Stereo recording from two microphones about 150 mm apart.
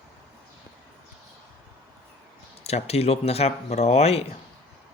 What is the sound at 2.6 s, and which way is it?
Speech, 45° left (ahead or behind).